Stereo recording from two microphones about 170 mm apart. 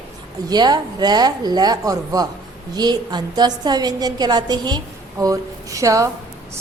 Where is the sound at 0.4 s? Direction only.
25° right (ahead or behind).